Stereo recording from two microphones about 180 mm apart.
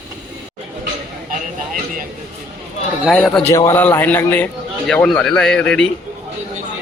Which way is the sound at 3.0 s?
5° left (ahead or behind).